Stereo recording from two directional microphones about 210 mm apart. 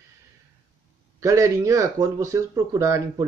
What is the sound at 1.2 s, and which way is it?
Speech, 15° right (ahead or behind).